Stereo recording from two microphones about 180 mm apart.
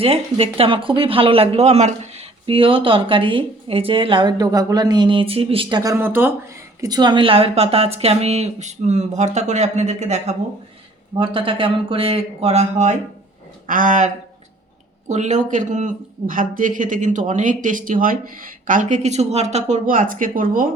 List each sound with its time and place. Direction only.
0.0 s speech: 35° right (ahead or behind); by 6.3 s 10° right (ahead or behind)
6.8 s speech: 20° right (ahead or behind); by 10.3 s 40° right (ahead or behind)
11.2 s speech: 30° right (ahead or behind); by 20.7 s 50° right (ahead or behind)